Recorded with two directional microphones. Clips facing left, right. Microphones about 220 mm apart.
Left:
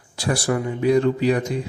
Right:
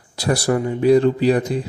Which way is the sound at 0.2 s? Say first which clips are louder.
Right 3 dB; 40° right (ahead or behind).